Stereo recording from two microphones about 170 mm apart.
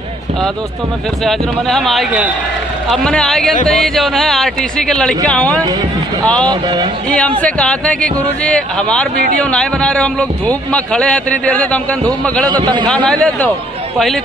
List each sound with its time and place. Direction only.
1.2 s speech: centre (ahead or behind)
6.4 s speech: 25° right (ahead or behind)
7.1 s a man's voice: 5° left (ahead or behind)
12.4 s speech: 25° right (ahead or behind)
12.8 s a man's voice: 5° left (ahead or behind)